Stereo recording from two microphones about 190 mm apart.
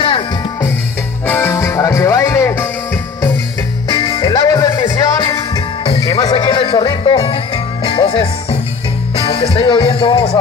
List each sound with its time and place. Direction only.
1.2 s music: 10° left (ahead or behind)